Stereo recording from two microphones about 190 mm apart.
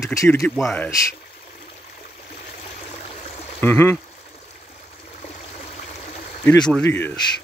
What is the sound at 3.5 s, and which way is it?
Speech, 10° left (ahead or behind).